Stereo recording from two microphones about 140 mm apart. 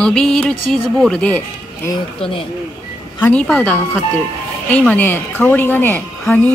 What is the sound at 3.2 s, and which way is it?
A woman's voice, 10° left (ahead or behind).